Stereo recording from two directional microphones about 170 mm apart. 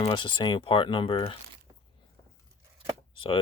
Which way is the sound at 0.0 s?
25° left (ahead or behind).